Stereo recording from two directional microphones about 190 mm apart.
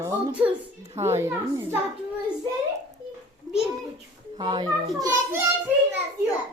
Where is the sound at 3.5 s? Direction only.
20° right (ahead or behind).